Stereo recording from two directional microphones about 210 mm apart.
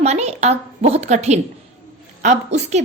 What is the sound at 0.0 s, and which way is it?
A woman's voice, 30° right (ahead or behind).